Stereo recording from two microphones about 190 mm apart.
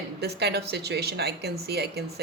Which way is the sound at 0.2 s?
60° right (ahead or behind).